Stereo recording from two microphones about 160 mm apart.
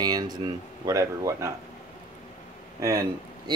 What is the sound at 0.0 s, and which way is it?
Speech, 25° right (ahead or behind).